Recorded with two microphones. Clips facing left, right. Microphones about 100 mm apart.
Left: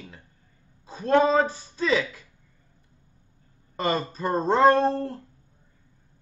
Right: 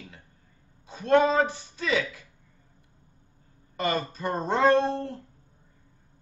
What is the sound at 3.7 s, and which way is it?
A woman's voice, 35° left (ahead or behind).